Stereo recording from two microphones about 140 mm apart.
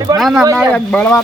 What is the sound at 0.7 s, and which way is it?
Speech, 10° left (ahead or behind).